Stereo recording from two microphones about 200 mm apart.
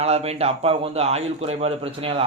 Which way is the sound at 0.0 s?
30° right (ahead or behind).